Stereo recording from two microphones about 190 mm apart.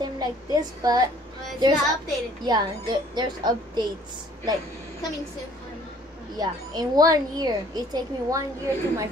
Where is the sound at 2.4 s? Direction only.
20° right (ahead or behind).